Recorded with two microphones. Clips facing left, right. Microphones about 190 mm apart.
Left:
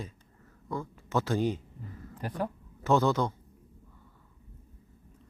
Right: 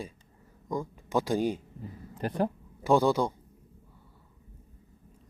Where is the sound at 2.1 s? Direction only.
25° right (ahead or behind).